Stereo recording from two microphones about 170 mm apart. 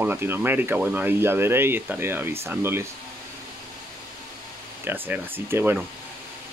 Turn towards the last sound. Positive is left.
turn(degrees=-10)  # may be behind; listen again after turning